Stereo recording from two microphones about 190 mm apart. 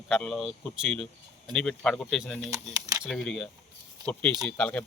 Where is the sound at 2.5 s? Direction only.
20° right (ahead or behind).